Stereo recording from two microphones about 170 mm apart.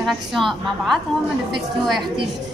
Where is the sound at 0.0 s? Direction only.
Centre (ahead or behind).